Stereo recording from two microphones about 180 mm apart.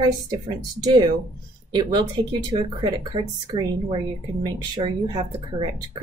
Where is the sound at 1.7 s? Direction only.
25° right (ahead or behind).